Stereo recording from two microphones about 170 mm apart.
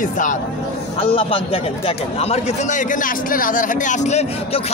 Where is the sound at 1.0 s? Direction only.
35° left (ahead or behind).